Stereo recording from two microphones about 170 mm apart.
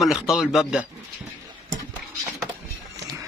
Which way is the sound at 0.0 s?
Centre (ahead or behind).